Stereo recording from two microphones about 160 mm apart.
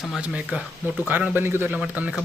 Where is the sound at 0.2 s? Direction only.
10° right (ahead or behind).